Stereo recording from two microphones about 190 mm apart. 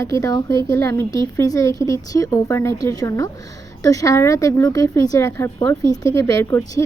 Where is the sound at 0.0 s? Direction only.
15° left (ahead or behind).